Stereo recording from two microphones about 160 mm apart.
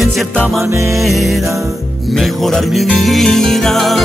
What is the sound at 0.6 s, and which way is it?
Music, 15° right (ahead or behind).